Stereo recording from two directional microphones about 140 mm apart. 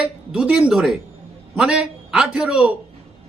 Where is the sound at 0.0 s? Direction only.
10° right (ahead or behind).